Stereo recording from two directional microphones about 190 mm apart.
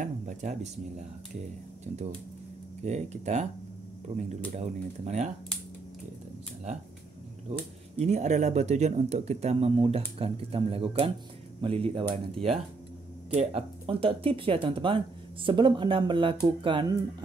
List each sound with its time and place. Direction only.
0.0 s speech: 40° right (ahead or behind)
2.8 s speech: 35° right (ahead or behind)
8.0 s speech: 35° right (ahead or behind)